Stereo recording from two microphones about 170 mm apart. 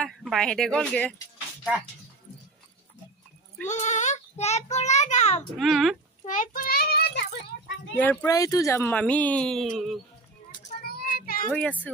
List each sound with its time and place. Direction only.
0.0 s speech: centre (ahead or behind)
3.6 s a child's voice: 45° left (ahead or behind)
5.6 s speech: centre (ahead or behind)
6.2 s child singing: 50° left (ahead or behind); by 7.9 s 80° left
8.0 s speech: 10° left (ahead or behind)
10.5 s children playing: 60° left (ahead or behind)
11.5 s speech: 10° left (ahead or behind)